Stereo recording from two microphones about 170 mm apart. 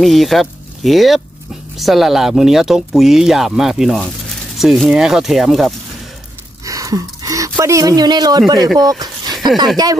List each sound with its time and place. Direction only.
0.0 s speech: centre (ahead or behind)
6.6 s speech: 20° right (ahead or behind)
8.7 s a sound: 25° right (ahead or behind)